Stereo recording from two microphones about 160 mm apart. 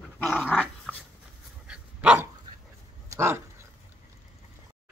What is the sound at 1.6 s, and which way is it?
Dog, 10° right (ahead or behind).